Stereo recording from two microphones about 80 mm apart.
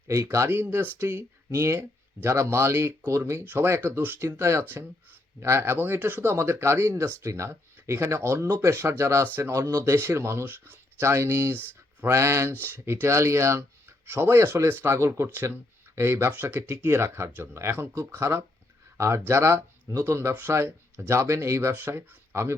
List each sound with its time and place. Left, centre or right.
0.1 s speech: right